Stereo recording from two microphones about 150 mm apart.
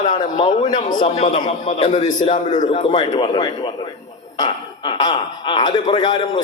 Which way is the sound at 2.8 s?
30° left (ahead or behind).